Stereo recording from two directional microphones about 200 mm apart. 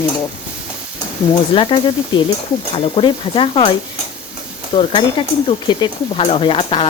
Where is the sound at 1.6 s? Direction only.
25° left (ahead or behind).